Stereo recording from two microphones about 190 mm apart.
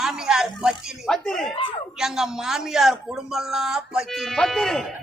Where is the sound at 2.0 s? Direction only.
Centre (ahead or behind).